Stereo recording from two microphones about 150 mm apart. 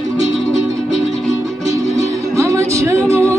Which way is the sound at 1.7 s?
20° right (ahead or behind).